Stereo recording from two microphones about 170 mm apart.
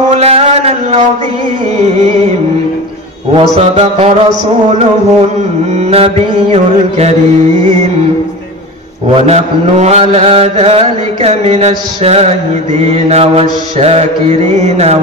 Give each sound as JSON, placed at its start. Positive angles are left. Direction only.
{"t": 0.1, "sound": "a sound", "side_deg": -35}
{"t": 3.3, "sound": "mantra", "side_deg": -35}
{"t": 5.9, "sound": "mantra", "side_deg": -35}
{"t": 9.1, "sound": "mantra", "side_deg": -40}